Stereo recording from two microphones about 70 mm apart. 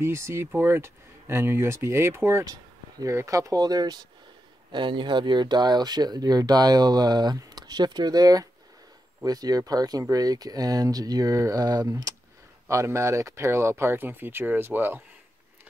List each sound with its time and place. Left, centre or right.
0.0 s speech: right
3.0 s speech: right
4.7 s speech: right
12.6 s speech: right